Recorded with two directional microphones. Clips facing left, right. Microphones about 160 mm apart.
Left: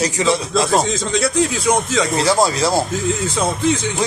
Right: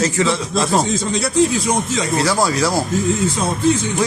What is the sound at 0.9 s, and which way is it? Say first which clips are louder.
Speech: left 1 dB; 90° left.